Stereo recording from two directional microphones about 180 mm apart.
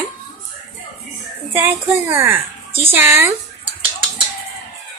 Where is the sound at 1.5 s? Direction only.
10° right (ahead or behind).